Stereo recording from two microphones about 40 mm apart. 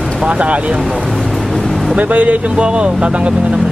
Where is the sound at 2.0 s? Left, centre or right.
Right.